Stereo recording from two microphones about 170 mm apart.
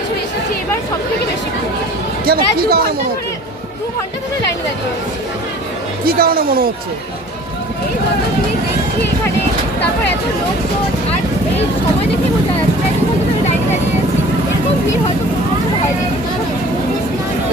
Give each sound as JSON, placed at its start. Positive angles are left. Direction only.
{"t": 2.2, "sound": "speech", "side_deg": -65}
{"t": 6.1, "sound": "speech", "side_deg": -60}